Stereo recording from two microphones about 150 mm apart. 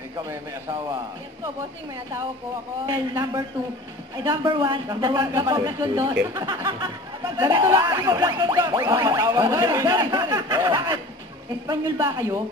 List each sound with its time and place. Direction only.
2.9 s speech: 25° right (ahead or behind)